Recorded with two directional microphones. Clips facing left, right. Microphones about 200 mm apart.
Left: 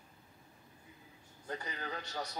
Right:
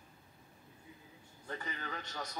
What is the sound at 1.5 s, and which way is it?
Speech, 35° left (ahead or behind).